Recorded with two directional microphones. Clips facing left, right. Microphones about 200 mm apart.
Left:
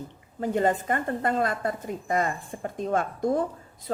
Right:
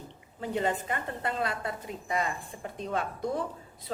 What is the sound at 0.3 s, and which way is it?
A woman's voice, 45° left (ahead or behind).